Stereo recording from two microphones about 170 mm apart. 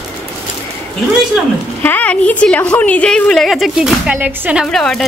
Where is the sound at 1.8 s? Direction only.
10° left (ahead or behind).